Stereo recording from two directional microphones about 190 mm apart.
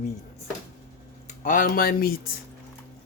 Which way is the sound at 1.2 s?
45° left (ahead or behind).